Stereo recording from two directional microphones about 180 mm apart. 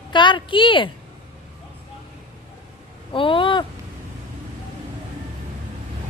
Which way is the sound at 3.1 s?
30° left (ahead or behind).